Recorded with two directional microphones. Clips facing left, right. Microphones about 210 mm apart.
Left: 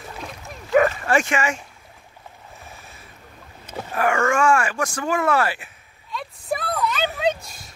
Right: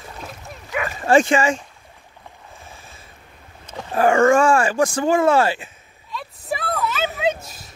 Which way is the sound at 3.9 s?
30° right (ahead or behind).